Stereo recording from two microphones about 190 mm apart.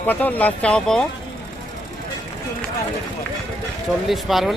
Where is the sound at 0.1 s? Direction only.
10° left (ahead or behind).